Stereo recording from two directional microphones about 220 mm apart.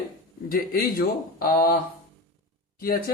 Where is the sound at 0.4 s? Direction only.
40° left (ahead or behind).